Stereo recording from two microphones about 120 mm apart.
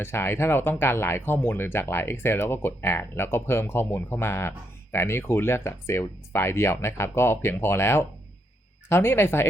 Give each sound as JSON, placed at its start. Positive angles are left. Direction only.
{"t": 0.0, "sound": "speech", "side_deg": 20}